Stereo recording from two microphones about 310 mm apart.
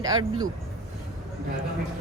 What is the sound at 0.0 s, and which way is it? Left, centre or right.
Speech, centre.